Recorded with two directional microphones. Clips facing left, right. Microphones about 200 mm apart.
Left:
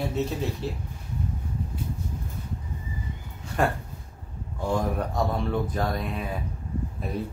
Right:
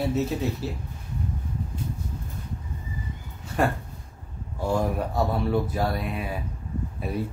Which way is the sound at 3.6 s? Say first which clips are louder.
Right 1 dB; 5° right (ahead or behind).